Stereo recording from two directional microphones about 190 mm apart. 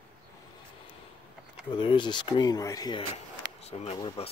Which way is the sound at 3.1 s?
35° left (ahead or behind).